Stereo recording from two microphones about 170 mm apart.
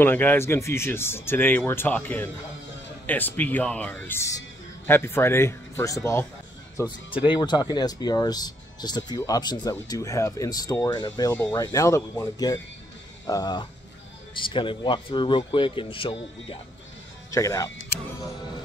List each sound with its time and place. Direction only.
0.0 s speech: 10° left (ahead or behind); by 16.5 s 30° left (ahead or behind)
17.3 s speech: 20° left (ahead or behind)